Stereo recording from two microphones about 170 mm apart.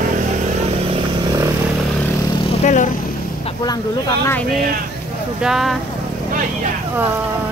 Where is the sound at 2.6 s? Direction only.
45° left (ahead or behind).